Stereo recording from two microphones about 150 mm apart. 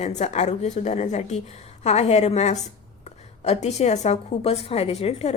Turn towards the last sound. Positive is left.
turn(degrees=45)  # may be behind; listen again after turning